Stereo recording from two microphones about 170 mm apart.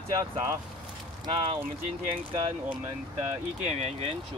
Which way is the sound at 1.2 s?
30° right (ahead or behind).